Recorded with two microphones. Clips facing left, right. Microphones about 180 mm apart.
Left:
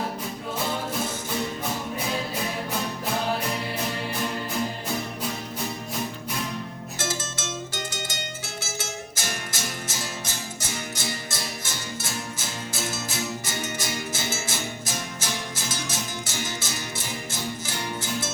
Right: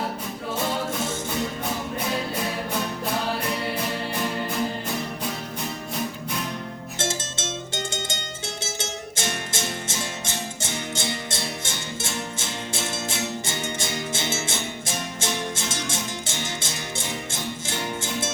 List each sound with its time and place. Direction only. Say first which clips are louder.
7.0 s music: right 2 dB; 25° right (ahead or behind)